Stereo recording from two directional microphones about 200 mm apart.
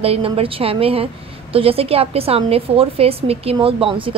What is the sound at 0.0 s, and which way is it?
A woman's voice, 30° right (ahead or behind).